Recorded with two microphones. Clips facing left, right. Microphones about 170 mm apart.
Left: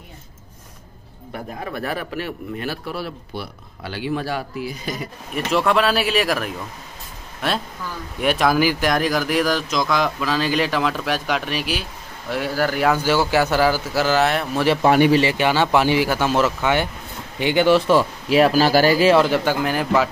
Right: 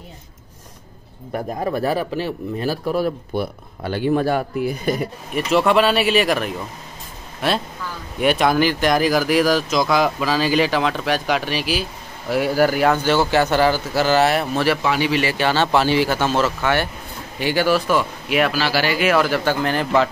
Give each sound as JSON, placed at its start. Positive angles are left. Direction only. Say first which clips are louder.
{"t": 1.3, "sound": "a man's voice", "louder": "right 7 dB", "side_deg": -40}
{"t": 5.5, "sound": "speech", "louder": "right 2 dB", "side_deg": 0}
{"t": 8.2, "sound": "speech", "louder": "right 1 dB", "side_deg": 0}
{"t": 12.8, "sound": "speech", "louder": "right 1 dB", "side_deg": 5}
{"t": 14.8, "sound": "speech", "louder": "left 6 dB", "side_deg": 50}
{"t": 15.1, "sound": "speech", "louder": "left 1 dB", "side_deg": 20}